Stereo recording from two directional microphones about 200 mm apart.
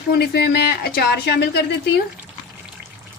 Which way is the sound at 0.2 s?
55° left (ahead or behind).